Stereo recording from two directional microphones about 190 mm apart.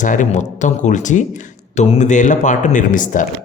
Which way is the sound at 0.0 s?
40° left (ahead or behind).